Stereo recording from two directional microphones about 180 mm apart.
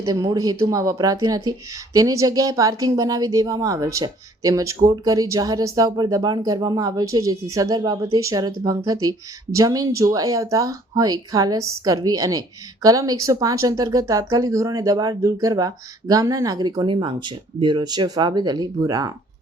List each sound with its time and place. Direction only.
0.0 s speech: 20° right (ahead or behind)